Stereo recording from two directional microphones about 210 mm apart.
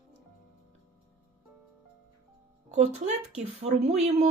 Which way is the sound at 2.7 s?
35° right (ahead or behind).